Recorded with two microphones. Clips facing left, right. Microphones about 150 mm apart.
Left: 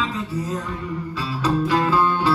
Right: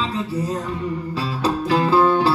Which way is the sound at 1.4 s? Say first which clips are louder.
Even; 35° right (ahead or behind).